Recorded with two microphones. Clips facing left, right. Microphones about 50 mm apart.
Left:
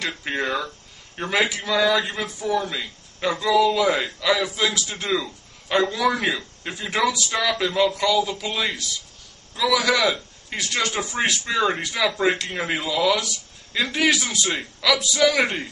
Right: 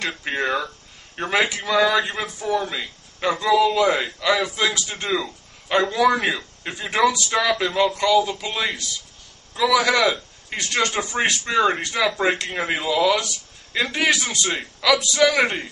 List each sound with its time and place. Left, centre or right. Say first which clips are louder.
0.0 s speech: right 1 dB; centre